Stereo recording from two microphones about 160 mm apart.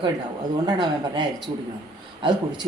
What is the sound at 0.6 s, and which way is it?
Speech, 30° right (ahead or behind).